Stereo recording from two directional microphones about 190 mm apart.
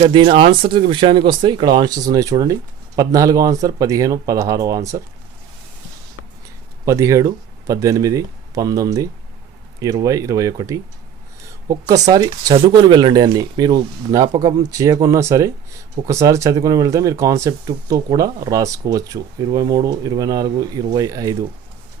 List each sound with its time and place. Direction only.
0.0 s speech: 25° right (ahead or behind)
6.8 s speech: 15° right (ahead or behind)